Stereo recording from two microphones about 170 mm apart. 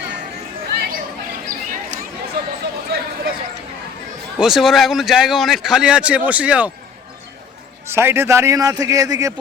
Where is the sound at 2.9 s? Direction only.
75° right (ahead or behind).